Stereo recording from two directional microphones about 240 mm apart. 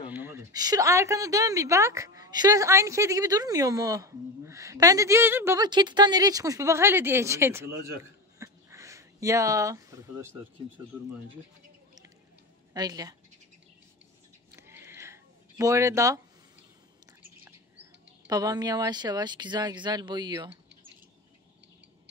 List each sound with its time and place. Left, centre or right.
0.1 s a woman's voice: centre
12.7 s speech: centre
14.5 s a sound: centre
18.2 s speech: centre